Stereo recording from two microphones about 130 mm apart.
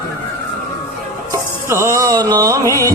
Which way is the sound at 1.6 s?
20° right (ahead or behind).